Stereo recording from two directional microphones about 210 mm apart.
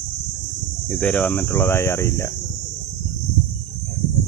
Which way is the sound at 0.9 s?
10° left (ahead or behind).